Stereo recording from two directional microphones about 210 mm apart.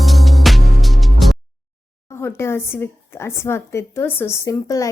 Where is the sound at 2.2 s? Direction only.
10° left (ahead or behind).